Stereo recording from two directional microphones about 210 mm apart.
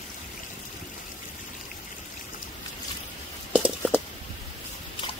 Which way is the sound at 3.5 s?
5° right (ahead or behind).